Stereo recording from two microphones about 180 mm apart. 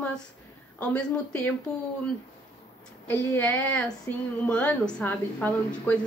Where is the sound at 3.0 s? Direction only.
10° left (ahead or behind).